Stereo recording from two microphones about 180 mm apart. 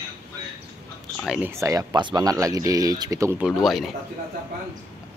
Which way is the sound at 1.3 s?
10° right (ahead or behind).